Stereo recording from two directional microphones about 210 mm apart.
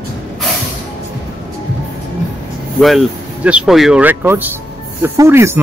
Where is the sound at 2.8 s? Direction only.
Centre (ahead or behind).